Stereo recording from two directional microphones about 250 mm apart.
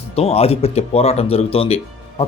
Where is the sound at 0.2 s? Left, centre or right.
Left.